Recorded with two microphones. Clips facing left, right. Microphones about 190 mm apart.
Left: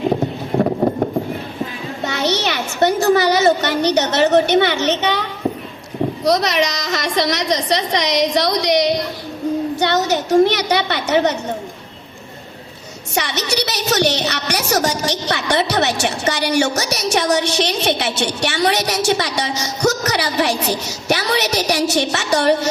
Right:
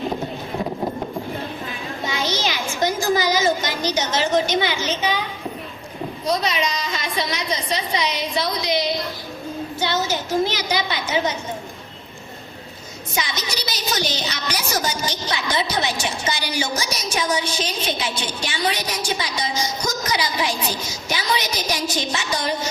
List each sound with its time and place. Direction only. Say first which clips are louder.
0.6 s clip-clop: left 9 dB; 55° left (ahead or behind)
2.0 s a woman's voice: left 5 dB; 70° left (ahead or behind)
13.1 s a woman's voice: left 7 dB; 70° left (ahead or behind)